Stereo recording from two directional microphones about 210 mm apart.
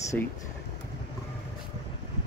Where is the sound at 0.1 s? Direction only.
5° left (ahead or behind).